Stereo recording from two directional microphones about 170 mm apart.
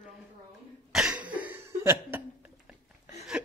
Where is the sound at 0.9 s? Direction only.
5° right (ahead or behind).